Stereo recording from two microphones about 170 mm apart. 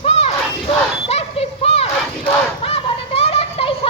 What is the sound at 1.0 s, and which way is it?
Battle cry, 35° left (ahead or behind).